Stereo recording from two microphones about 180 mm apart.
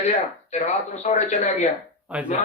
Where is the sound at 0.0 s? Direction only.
40° left (ahead or behind).